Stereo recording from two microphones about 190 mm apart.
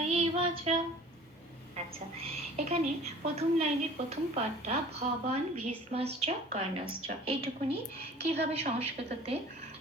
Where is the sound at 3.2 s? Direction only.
30° right (ahead or behind).